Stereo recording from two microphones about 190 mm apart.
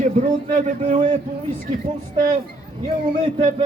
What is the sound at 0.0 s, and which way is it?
A man's voice, 40° right (ahead or behind).